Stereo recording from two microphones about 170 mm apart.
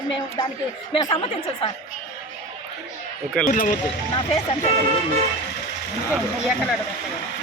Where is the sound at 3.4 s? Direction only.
50° left (ahead or behind).